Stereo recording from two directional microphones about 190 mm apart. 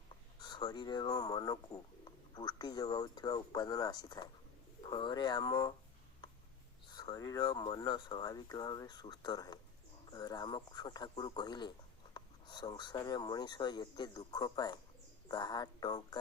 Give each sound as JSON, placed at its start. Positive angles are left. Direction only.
{"t": 0.3, "sound": "speech", "side_deg": 25}
{"t": 6.9, "sound": "speech", "side_deg": 20}